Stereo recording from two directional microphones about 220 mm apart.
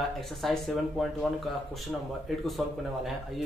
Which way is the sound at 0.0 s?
Centre (ahead or behind).